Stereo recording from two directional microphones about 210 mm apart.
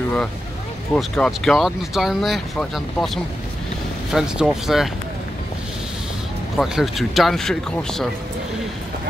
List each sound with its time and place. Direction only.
0.9 s speech: centre (ahead or behind)
4.1 s speech: centre (ahead or behind)
6.5 s speech: centre (ahead or behind)